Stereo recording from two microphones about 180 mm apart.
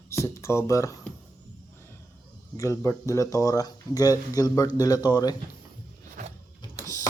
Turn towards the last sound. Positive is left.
turn(degrees=20)  # may be behind; listen again after turning